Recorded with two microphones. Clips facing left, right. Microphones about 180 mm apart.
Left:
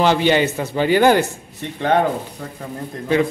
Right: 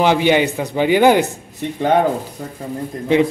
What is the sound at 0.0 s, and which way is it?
A man's voice, 15° right (ahead or behind).